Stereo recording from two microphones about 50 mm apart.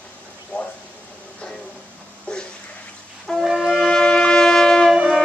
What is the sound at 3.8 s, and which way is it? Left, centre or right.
Brass instrument, centre.